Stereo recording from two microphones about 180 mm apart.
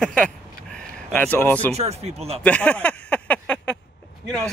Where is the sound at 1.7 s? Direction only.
35° right (ahead or behind).